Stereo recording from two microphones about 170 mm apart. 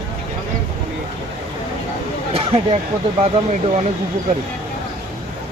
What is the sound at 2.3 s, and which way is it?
Speech, 35° right (ahead or behind).